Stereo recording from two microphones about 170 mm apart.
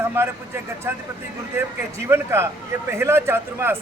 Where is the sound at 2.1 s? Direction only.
15° right (ahead or behind).